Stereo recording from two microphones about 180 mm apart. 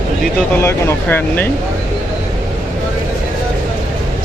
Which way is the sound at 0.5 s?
15° left (ahead or behind).